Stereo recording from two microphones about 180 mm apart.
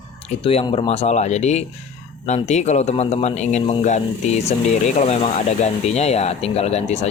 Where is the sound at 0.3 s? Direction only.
30° left (ahead or behind).